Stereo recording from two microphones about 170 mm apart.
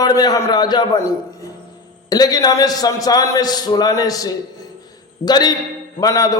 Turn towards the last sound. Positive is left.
turn(degrees=20)  # may be behind; listen again after turning